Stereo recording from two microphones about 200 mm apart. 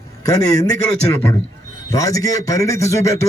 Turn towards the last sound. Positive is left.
turn(degrees=15)  # may be behind; listen again after turning